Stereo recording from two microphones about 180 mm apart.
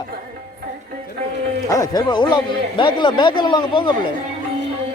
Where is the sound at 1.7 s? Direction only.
20° left (ahead or behind).